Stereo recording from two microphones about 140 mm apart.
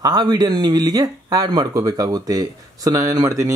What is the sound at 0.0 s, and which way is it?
Speech, 30° right (ahead or behind).